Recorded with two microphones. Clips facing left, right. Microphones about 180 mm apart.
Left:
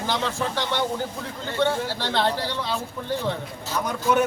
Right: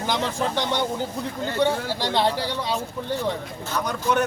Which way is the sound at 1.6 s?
15° right (ahead or behind).